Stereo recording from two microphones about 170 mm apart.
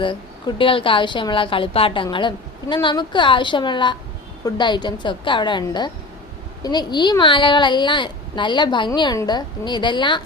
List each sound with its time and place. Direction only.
0.0 s a woman's voice: 30° left (ahead or behind)